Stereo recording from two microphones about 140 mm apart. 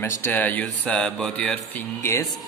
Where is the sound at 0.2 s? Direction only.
10° left (ahead or behind).